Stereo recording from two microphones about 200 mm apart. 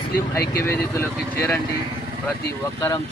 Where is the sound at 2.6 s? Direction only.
15° left (ahead or behind).